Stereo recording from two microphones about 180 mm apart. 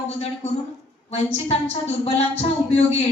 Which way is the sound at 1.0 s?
35° left (ahead or behind).